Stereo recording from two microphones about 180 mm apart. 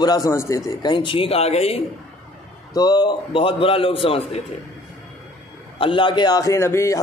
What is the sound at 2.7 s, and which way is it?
Speech, 20° left (ahead or behind).